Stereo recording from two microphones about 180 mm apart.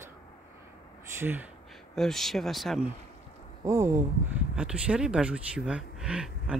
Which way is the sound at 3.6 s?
15° right (ahead or behind).